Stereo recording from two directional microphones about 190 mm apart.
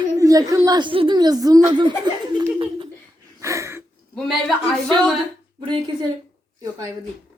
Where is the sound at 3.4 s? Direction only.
15° right (ahead or behind).